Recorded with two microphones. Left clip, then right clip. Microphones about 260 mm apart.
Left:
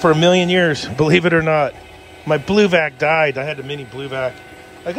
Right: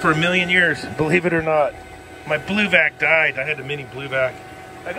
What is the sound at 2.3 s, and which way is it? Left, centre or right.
A man's voice, centre.